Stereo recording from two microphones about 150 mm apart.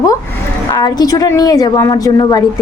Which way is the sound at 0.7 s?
25° left (ahead or behind).